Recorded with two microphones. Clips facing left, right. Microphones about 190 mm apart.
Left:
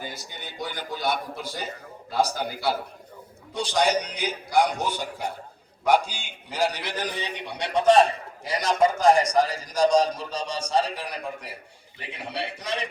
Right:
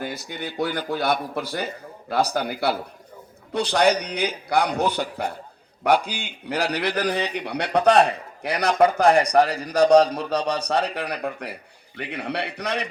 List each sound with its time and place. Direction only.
0.0 s a man's voice: 60° right (ahead or behind)